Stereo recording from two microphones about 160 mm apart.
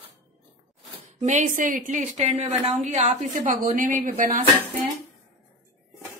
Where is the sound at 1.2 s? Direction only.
50° right (ahead or behind).